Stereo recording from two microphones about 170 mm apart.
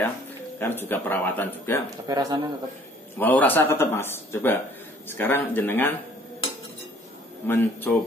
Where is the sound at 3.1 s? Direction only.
10° left (ahead or behind).